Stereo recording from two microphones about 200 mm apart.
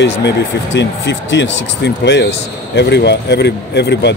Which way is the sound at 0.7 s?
65° left (ahead or behind).